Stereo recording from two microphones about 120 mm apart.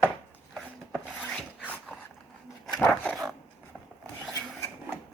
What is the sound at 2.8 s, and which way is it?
Dog, 10° left (ahead or behind).